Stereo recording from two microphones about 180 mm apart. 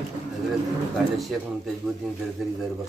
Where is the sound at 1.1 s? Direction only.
Centre (ahead or behind).